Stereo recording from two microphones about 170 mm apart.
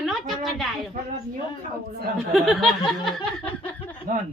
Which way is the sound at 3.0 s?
5° left (ahead or behind).